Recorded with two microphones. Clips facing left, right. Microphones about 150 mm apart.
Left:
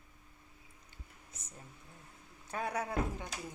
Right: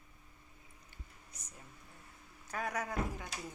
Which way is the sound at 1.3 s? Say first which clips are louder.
Left 5 dB; 25° left (ahead or behind).